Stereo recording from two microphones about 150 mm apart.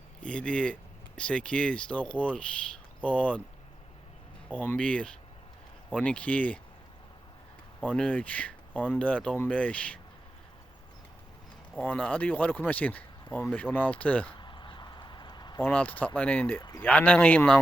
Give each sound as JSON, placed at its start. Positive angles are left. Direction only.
{"t": 0.2, "sound": "speech", "side_deg": 5}
{"t": 4.5, "sound": "speech", "side_deg": 10}
{"t": 7.9, "sound": "speech", "side_deg": 10}
{"t": 11.8, "sound": "speech", "side_deg": 10}
{"t": 14.3, "sound": "a sound", "side_deg": 30}
{"t": 15.6, "sound": "speech", "side_deg": 10}